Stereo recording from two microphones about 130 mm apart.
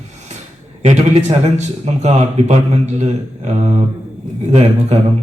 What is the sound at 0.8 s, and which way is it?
A man's voice, 55° right (ahead or behind).